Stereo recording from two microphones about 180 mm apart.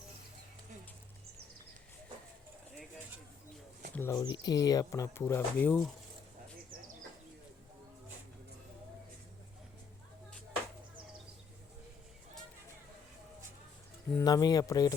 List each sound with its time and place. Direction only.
3.9 s speech: 15° left (ahead or behind)
14.1 s speech: 15° left (ahead or behind)